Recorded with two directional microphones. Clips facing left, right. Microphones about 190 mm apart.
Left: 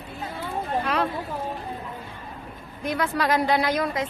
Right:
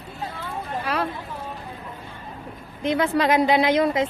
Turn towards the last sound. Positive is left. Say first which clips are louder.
# right 5 dB
turn(degrees=-25)  # may be behind; listen again after turning